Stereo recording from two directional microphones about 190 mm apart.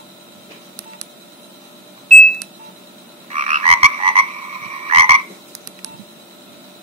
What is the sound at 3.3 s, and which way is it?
Frog, 40° right (ahead or behind).